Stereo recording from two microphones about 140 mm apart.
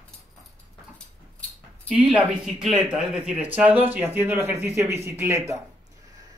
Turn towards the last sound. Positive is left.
turn(degrees=-20)  # may be behind; listen again after turning